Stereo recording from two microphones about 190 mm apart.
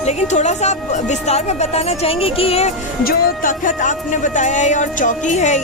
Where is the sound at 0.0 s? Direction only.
40° left (ahead or behind).